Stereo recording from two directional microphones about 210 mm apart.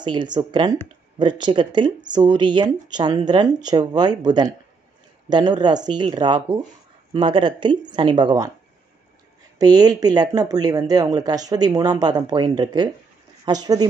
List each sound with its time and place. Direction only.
0.0 s speech: 20° right (ahead or behind)
9.6 s speech: 20° right (ahead or behind)